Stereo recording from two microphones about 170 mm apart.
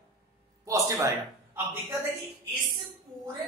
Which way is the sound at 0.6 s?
20° right (ahead or behind).